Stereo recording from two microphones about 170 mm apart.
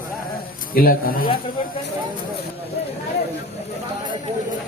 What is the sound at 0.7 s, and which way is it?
Speech, 60° left (ahead or behind).